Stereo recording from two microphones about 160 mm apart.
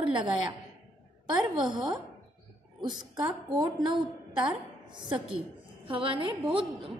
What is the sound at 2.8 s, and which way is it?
A woman's voice, 25° right (ahead or behind).